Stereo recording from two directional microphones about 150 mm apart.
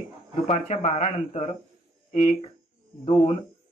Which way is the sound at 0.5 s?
45° left (ahead or behind).